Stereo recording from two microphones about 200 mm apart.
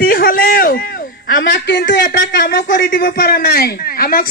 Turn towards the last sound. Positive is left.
turn(degrees=50)  # may be behind; listen again after turning